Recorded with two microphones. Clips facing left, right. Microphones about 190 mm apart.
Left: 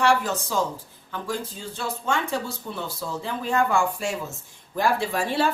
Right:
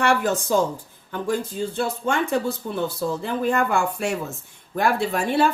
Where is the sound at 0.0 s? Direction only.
55° right (ahead or behind).